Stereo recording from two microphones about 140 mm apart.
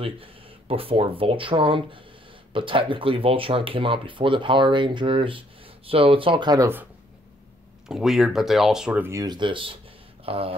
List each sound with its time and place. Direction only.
0.0 s speech: 40° right (ahead or behind)
7.9 s speech: centre (ahead or behind)
9.0 s speech: 25° right (ahead or behind)
10.2 s a sound: 45° right (ahead or behind)